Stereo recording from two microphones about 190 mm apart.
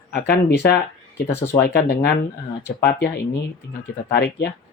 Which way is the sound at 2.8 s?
60° left (ahead or behind).